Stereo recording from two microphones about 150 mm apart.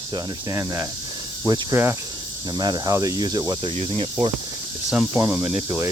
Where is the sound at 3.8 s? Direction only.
40° right (ahead or behind).